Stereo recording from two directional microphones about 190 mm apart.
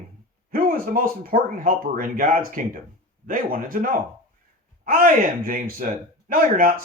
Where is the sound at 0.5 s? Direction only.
50° right (ahead or behind).